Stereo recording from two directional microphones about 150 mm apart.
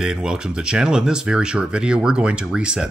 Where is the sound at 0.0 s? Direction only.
5° right (ahead or behind).